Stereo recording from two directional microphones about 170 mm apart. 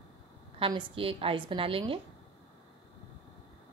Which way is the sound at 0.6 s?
30° right (ahead or behind).